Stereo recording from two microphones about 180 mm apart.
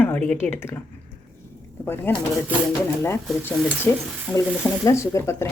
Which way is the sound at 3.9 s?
10° left (ahead or behind).